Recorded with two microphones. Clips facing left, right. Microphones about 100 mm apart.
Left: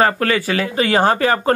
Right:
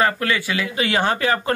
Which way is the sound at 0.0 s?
40° left (ahead or behind).